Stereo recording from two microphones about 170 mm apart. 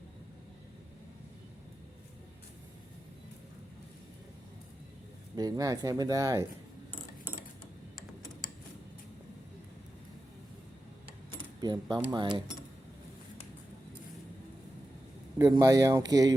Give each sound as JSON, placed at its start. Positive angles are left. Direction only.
{"t": 5.4, "sound": "speech", "side_deg": -20}
{"t": 11.3, "sound": "speech", "side_deg": -25}
{"t": 15.4, "sound": "speech", "side_deg": -20}